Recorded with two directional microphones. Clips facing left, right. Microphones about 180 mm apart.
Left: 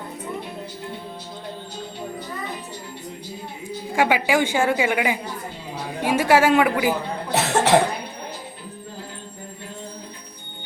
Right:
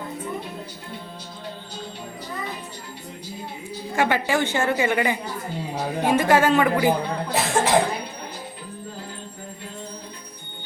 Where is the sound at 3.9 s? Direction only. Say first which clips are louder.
Left 2 dB; 10° left (ahead or behind).